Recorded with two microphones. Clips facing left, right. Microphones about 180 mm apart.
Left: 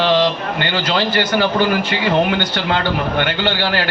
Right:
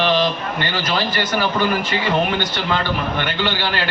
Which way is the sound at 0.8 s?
65° left (ahead or behind).